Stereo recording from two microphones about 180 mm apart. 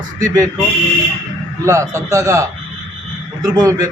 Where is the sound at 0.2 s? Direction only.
20° right (ahead or behind).